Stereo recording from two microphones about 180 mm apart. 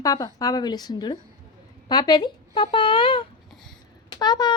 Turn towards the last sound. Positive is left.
turn(degrees=25)  # may be behind; listen again after turning